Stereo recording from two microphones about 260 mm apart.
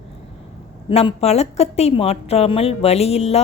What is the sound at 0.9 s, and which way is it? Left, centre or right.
A woman's voice, left.